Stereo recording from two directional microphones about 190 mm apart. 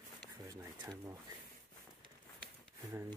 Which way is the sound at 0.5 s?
15° right (ahead or behind).